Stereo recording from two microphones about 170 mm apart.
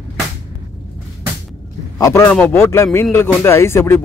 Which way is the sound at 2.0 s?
20° left (ahead or behind).